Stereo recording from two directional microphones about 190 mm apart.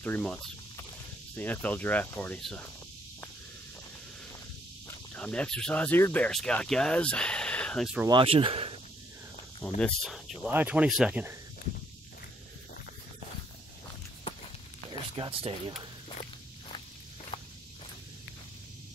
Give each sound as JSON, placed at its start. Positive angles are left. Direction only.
{"t": 0.0, "sound": "speech", "side_deg": 5}
{"t": 4.8, "sound": "speech", "side_deg": 5}
{"t": 8.1, "sound": "speech", "side_deg": -30}
{"t": 9.8, "sound": "speech", "side_deg": 0}
{"t": 14.9, "sound": "a sound", "side_deg": -25}